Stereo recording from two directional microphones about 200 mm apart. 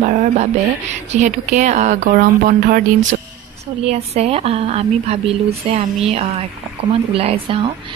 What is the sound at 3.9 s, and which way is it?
Speech, 30° right (ahead or behind).